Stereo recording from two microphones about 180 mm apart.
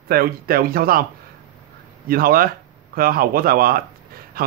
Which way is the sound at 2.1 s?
55° right (ahead or behind).